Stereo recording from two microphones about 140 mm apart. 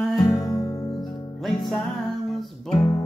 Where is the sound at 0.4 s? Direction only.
25° left (ahead or behind).